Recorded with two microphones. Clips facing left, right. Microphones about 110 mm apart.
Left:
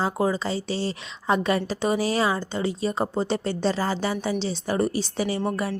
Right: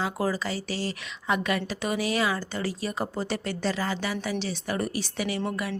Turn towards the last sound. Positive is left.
turn(degrees=35)  # may be behind; listen again after turning